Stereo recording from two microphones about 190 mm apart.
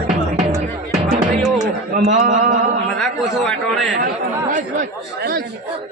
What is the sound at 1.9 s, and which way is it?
Speech, 40° right (ahead or behind).